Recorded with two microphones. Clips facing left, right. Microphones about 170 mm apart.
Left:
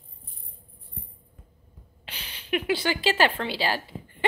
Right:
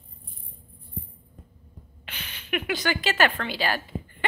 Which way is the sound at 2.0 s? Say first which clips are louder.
Right 1 dB; 35° left (ahead or behind).